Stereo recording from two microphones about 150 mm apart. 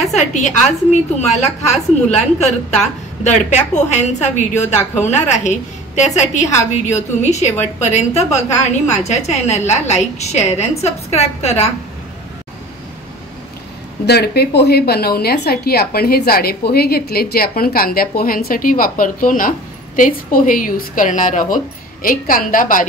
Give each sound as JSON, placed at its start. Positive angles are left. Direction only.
{"t": 0.1, "sound": "a woman's voice", "side_deg": 50}
{"t": 14.0, "sound": "a woman's voice", "side_deg": 90}
{"t": 22.0, "sound": "a woman's voice", "side_deg": 70}